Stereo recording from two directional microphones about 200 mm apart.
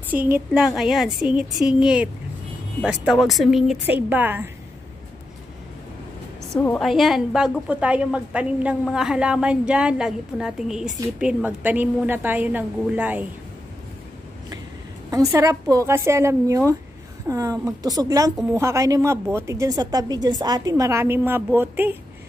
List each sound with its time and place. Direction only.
0.7 s a woman's voice: centre (ahead or behind)
6.5 s a woman's voice: 5° left (ahead or behind)
15.0 s speech: 15° right (ahead or behind)